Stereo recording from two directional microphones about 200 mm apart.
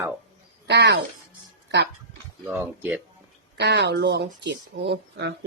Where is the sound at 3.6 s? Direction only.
55° right (ahead or behind).